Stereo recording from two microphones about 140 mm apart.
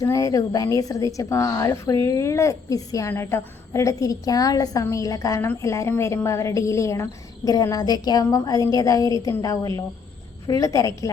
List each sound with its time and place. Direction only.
0.0 s a woman's voice: 25° left (ahead or behind)